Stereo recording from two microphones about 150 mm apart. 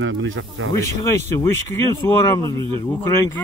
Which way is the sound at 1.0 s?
20° left (ahead or behind).